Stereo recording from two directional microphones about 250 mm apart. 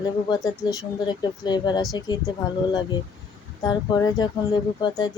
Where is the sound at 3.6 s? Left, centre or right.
Centre.